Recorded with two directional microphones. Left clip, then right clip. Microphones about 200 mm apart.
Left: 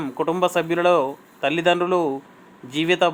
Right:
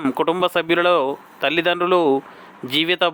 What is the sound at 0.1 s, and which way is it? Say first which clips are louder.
Speech: right 1 dB; 15° right (ahead or behind).